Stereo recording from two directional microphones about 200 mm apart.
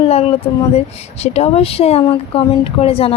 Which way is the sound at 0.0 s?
30° left (ahead or behind).